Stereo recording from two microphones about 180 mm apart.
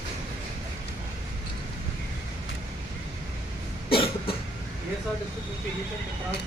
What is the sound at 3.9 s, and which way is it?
Cough, 30° left (ahead or behind).